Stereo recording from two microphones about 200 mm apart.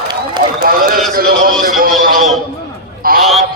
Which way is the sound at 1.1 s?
45° right (ahead or behind).